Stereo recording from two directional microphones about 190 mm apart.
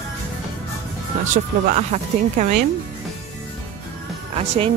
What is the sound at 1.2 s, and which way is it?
Speech, 40° right (ahead or behind).